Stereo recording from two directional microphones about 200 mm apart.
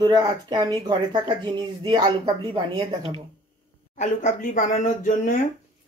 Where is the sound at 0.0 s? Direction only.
20° right (ahead or behind).